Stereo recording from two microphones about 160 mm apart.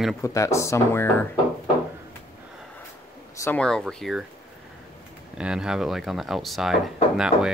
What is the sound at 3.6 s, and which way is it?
Speech, 5° left (ahead or behind).